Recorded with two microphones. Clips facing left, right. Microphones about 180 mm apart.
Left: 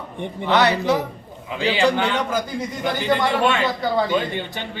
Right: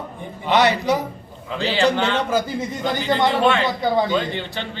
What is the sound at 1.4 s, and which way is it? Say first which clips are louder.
Speech: even; 15° left (ahead or behind).